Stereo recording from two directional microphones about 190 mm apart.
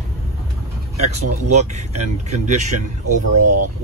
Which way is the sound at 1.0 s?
35° right (ahead or behind).